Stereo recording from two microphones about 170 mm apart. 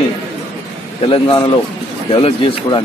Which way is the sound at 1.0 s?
30° left (ahead or behind).